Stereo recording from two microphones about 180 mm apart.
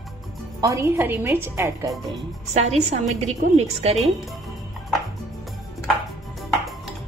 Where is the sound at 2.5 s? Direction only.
35° right (ahead or behind).